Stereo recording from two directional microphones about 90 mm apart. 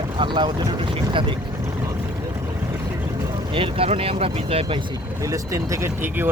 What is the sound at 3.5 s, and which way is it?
Speech, 90° right.